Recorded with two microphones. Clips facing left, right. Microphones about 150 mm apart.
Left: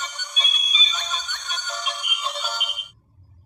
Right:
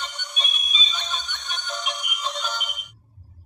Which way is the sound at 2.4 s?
5° left (ahead or behind).